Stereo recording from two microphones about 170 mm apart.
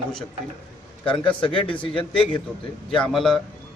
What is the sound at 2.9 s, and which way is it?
Speech, centre (ahead or behind).